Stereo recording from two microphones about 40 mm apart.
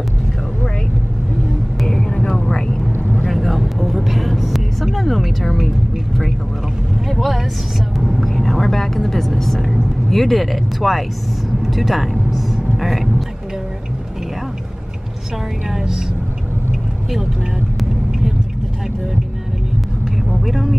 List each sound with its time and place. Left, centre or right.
2.0 s vehicle: centre
3.3 s vehicle: centre
4.9 s speech: centre
7.1 s speech: centre
15.7 s a woman's voice: centre
20.4 s speech: centre